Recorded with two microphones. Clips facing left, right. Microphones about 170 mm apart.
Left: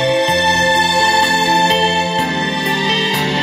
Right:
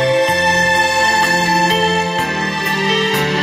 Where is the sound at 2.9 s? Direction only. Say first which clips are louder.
Right 2 dB; 45° right (ahead or behind).